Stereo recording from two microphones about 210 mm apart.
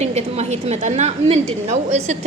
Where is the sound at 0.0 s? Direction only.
30° right (ahead or behind).